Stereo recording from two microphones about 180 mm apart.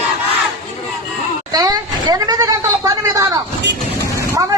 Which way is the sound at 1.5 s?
20° right (ahead or behind).